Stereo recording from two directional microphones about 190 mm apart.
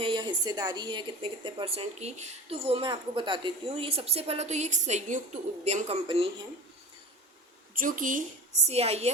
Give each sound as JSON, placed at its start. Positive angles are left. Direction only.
{"t": 0.0, "sound": "a woman's voice", "side_deg": -25}
{"t": 7.8, "sound": "a woman's voice", "side_deg": -45}
{"t": 8.6, "sound": "a woman's voice", "side_deg": -35}